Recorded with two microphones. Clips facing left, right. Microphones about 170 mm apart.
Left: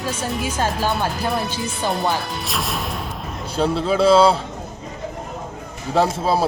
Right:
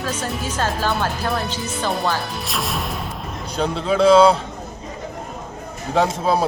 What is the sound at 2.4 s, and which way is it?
A man's voice, centre (ahead or behind).